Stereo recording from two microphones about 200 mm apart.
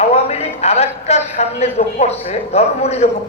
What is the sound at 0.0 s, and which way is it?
A man's voice, 30° left (ahead or behind).